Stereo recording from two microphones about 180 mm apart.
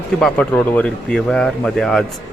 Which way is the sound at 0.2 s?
5° left (ahead or behind).